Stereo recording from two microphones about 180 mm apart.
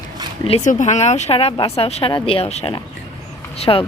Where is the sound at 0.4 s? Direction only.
40° left (ahead or behind).